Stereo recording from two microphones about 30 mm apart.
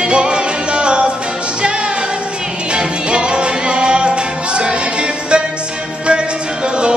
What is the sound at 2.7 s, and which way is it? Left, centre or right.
Music, right.